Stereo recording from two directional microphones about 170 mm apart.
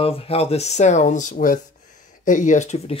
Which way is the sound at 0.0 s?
35° left (ahead or behind).